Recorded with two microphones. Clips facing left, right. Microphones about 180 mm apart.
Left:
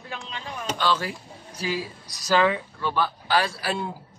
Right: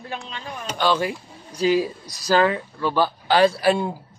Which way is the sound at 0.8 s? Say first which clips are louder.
Right 5 dB; 15° right (ahead or behind).